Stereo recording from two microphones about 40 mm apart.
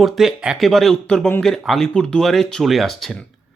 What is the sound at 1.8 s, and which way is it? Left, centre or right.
Speech, centre.